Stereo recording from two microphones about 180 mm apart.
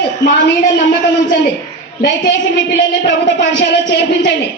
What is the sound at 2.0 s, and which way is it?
A woman's voice, 80° left.